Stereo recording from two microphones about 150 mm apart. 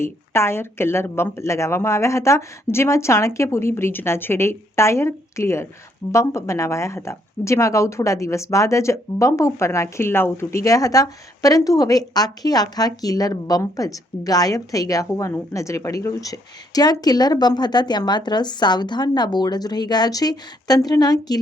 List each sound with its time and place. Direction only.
0.0 s speech: 15° left (ahead or behind)